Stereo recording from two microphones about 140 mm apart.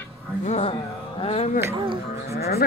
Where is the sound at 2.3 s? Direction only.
90° left.